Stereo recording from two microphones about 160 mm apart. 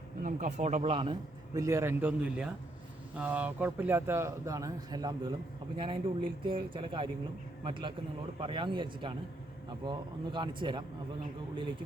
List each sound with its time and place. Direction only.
0.2 s speech: 50° right (ahead or behind); by 1.1 s 35° right (ahead or behind)
1.5 s a man's voice: 20° right (ahead or behind)